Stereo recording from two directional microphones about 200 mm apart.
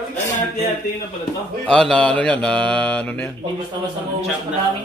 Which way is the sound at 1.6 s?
5° left (ahead or behind).